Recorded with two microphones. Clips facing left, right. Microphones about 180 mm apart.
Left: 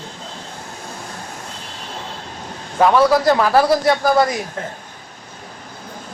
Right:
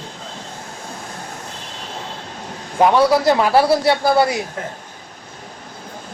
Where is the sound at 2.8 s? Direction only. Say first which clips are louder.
Even; 15° right (ahead or behind).